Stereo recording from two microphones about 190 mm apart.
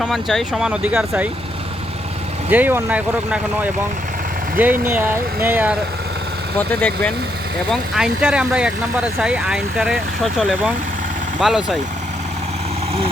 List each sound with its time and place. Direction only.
0.0 s speech: centre (ahead or behind)
2.5 s speech: 10° right (ahead or behind)
4.5 s speech: 10° right (ahead or behind)
6.6 s speech: 10° left (ahead or behind)
7.7 s speech: 5° right (ahead or behind)